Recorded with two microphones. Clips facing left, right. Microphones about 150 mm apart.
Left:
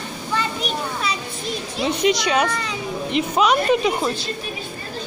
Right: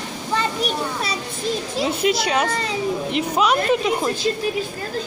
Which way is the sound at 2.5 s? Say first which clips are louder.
Right 2 dB; 30° right (ahead or behind).